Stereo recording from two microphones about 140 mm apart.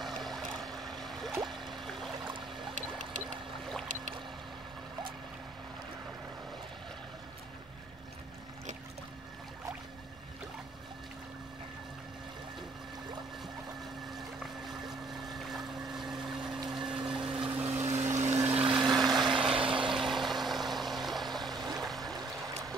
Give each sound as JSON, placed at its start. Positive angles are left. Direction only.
{"t": 0.0, "sound": "a sound", "side_deg": 0}
{"t": 14.1, "sound": "boat", "side_deg": 0}
{"t": 16.7, "sound": "a sound", "side_deg": -5}
{"t": 17.5, "sound": "boat", "side_deg": -15}
{"t": 17.8, "sound": "a sound", "side_deg": -55}
{"t": 18.5, "sound": "vehicle", "side_deg": -45}
{"t": 18.8, "sound": "vehicle", "side_deg": 0}
{"t": 19.5, "sound": "vehicle", "side_deg": -40}
{"t": 19.9, "sound": "vehicle", "side_deg": 0}
{"t": 21.5, "sound": "vehicle", "side_deg": -30}
{"t": 21.7, "sound": "a sound", "side_deg": 0}
{"t": 22.1, "sound": "stream", "side_deg": -25}